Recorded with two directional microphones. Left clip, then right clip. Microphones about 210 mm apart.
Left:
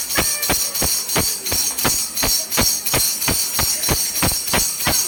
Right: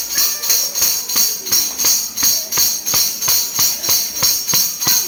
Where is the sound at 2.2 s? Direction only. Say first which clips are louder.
Right 2 dB; 45° left (ahead or behind).